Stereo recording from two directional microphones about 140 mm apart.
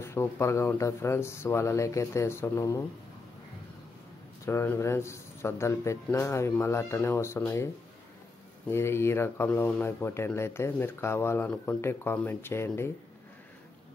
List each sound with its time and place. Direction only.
0.0 s speech: 20° left (ahead or behind)
4.5 s speech: 20° left (ahead or behind)